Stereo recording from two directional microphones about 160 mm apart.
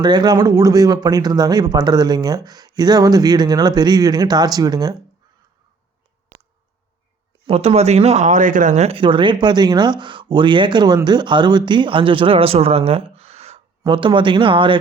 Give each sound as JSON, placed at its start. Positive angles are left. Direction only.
{"t": 0.0, "sound": "speech", "side_deg": -25}
{"t": 7.4, "sound": "speech", "side_deg": -40}